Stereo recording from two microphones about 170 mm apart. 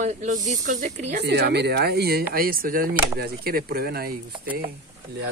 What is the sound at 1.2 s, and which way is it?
Speech, 75° right (ahead or behind).